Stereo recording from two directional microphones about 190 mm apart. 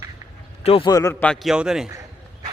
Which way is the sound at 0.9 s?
15° left (ahead or behind).